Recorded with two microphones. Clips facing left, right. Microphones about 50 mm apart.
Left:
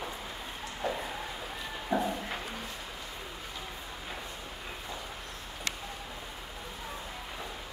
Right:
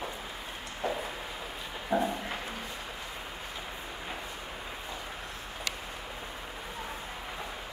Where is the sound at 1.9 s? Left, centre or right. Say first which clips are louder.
Right 2 dB; centre.